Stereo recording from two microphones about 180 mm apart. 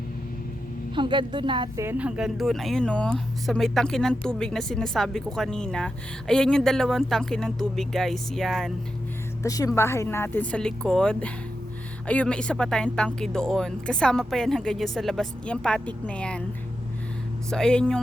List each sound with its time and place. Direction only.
0.9 s a woman's voice: 25° right (ahead or behind)
1.8 s speech: 10° right (ahead or behind)
9.4 s speech: 20° left (ahead or behind)
17.5 s speech: 5° left (ahead or behind)